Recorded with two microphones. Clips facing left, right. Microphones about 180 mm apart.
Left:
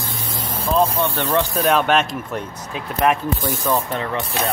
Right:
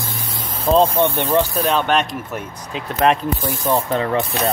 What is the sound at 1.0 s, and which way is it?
Speech, 15° right (ahead or behind).